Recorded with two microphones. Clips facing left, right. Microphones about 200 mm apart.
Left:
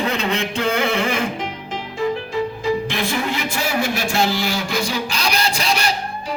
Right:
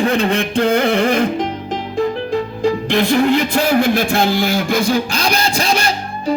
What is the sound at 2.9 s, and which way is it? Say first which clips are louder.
Music: right 9 dB; 60° right (ahead or behind).